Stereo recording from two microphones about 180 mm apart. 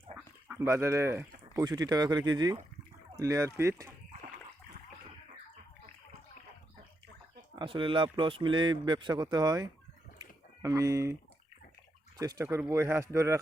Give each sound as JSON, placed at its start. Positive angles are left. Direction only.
{"t": 0.4, "sound": "a man's voice", "side_deg": -10}
{"t": 7.5, "sound": "a man's voice", "side_deg": -25}